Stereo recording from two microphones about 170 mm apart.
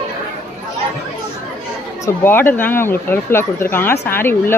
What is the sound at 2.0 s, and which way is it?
Speech, 15° left (ahead or behind).